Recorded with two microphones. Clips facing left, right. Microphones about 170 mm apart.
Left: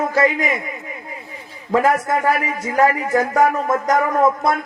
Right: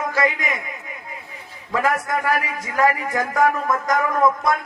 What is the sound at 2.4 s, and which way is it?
Speech, 45° left (ahead or behind).